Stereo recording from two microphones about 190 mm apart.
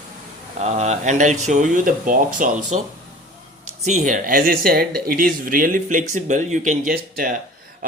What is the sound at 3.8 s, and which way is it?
Speech, 40° right (ahead or behind).